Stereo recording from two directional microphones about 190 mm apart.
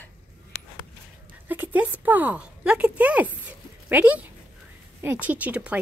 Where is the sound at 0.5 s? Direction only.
65° right (ahead or behind).